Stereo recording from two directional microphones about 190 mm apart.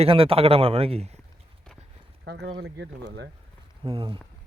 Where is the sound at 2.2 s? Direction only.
65° right (ahead or behind).